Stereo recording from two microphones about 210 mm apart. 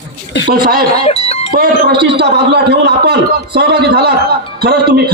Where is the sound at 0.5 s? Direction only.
45° right (ahead or behind).